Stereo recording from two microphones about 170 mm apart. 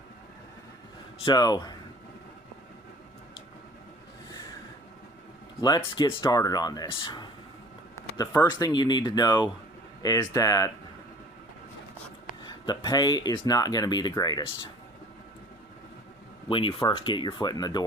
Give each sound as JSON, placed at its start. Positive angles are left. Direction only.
{"t": 1.2, "sound": "speech", "side_deg": 25}
{"t": 5.5, "sound": "speech", "side_deg": 25}
{"t": 12.4, "sound": "speech", "side_deg": 25}
{"t": 16.5, "sound": "speech", "side_deg": 30}